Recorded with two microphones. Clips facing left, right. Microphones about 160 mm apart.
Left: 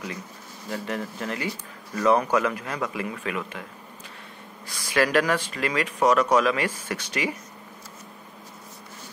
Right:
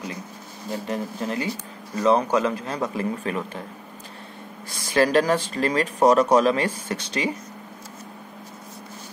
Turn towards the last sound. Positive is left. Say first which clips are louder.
# right 2 dB
turn(degrees=-25)  # may be behind; listen again after turning